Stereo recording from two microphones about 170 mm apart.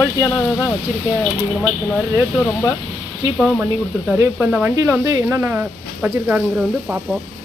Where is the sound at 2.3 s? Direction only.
10° left (ahead or behind).